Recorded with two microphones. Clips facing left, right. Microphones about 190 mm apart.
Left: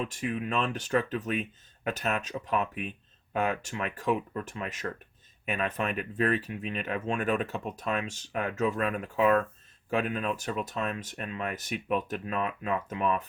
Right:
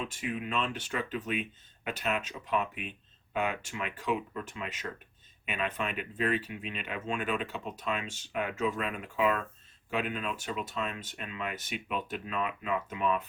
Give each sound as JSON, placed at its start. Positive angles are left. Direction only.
{"t": 0.1, "sound": "speech", "side_deg": 40}
{"t": 5.5, "sound": "speech", "side_deg": 45}